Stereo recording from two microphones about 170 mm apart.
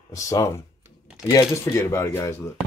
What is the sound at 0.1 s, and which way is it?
Speech, 20° left (ahead or behind).